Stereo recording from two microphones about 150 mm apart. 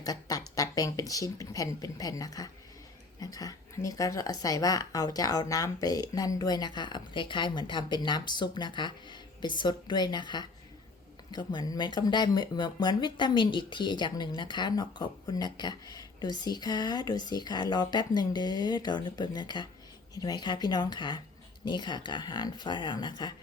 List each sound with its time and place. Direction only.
0.0 s speech: 25° left (ahead or behind)